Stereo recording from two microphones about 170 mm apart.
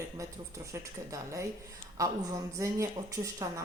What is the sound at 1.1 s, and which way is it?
Speech, 20° right (ahead or behind).